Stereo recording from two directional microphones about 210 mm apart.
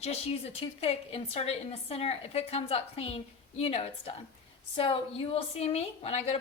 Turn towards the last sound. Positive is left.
turn(degrees=30)  # may be behind; listen again after turning